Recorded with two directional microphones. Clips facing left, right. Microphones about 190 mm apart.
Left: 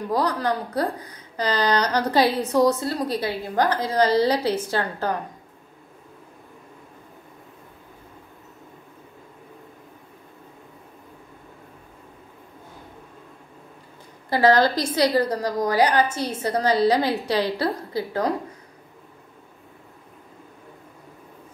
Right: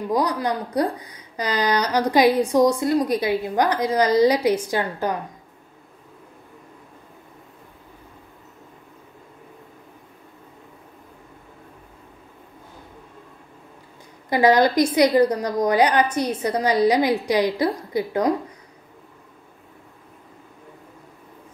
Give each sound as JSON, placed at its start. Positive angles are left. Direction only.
{"t": 0.1, "sound": "a woman's voice", "side_deg": -15}
{"t": 14.3, "sound": "a woman's voice", "side_deg": -15}